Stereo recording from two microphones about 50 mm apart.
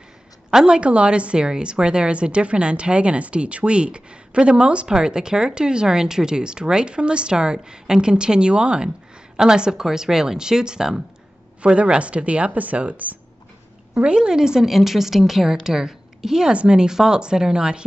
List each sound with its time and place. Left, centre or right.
0.5 s a woman's voice: centre; by 13.2 s right
13.9 s a woman's voice: centre